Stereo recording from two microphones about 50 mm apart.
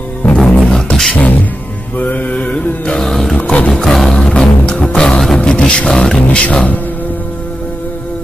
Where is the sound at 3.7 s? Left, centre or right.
Centre.